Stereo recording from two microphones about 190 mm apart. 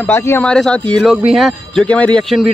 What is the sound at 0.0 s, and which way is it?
Speech, 10° left (ahead or behind).